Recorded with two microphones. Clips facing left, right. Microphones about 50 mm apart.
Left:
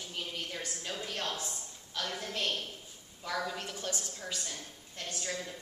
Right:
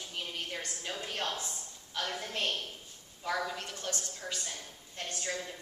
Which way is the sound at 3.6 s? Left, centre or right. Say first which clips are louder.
Left 1 dB; centre.